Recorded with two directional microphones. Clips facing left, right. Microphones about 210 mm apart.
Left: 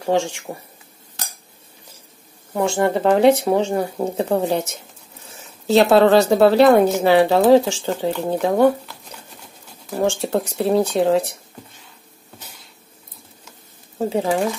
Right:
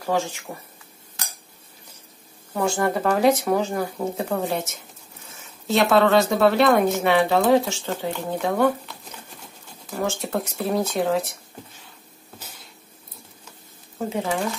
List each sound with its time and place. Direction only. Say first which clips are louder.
0.0 s speech: left 5 dB; 30° left (ahead or behind)
2.5 s speech: left 4 dB; 25° left (ahead or behind)
5.9 s a woman's voice: left 3 dB; 30° left (ahead or behind)
9.8 s speech: left 6 dB; 35° left (ahead or behind)
13.9 s speech: left 6 dB; 35° left (ahead or behind)